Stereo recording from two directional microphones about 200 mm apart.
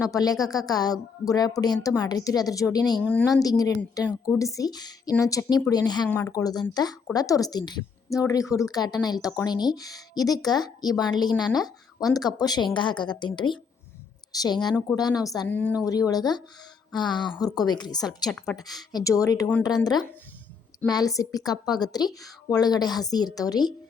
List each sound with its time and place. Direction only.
0.0 s a woman's voice: 15° left (ahead or behind)
18.3 s a woman's voice: centre (ahead or behind)
18.8 s a woman's voice: 20° left (ahead or behind)